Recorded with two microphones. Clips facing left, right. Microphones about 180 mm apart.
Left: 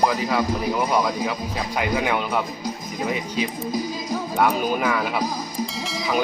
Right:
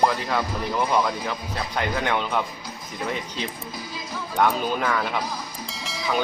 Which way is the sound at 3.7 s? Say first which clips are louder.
Left 9 dB; 40° left (ahead or behind).